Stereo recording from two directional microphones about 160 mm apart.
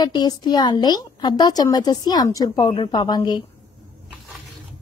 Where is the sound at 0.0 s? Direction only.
25° left (ahead or behind).